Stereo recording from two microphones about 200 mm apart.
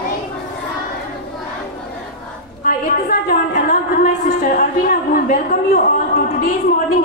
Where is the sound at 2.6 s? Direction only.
45° left (ahead or behind).